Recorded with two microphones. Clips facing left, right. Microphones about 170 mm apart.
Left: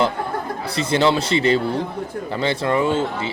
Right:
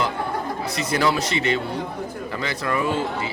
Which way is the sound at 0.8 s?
25° left (ahead or behind).